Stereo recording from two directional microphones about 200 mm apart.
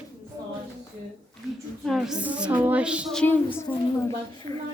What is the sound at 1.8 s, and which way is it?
Speech, centre (ahead or behind).